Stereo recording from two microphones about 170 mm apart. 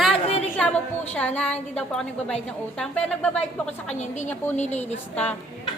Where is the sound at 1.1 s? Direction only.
10° left (ahead or behind).